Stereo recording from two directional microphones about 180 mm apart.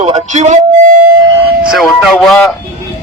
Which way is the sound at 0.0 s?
40° right (ahead or behind).